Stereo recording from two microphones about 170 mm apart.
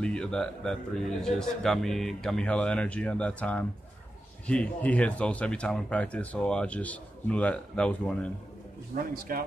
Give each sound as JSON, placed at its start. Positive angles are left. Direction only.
{"t": 0.0, "sound": "speech", "side_deg": 5}
{"t": 8.9, "sound": "a man's voice", "side_deg": -60}